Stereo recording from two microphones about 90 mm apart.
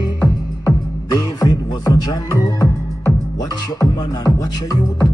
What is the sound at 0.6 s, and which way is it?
Beatboxing, 40° left (ahead or behind).